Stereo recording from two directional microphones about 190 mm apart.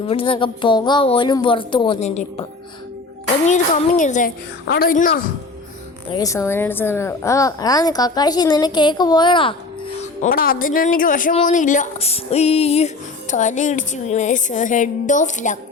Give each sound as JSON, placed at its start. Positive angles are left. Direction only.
{"t": 0.0, "sound": "a woman's voice", "side_deg": 30}
{"t": 3.4, "sound": "a woman's voice", "side_deg": 40}
{"t": 4.6, "sound": "speech", "side_deg": 55}
{"t": 6.1, "sound": "a woman's voice", "side_deg": 20}
{"t": 10.0, "sound": "a woman's voice", "side_deg": 45}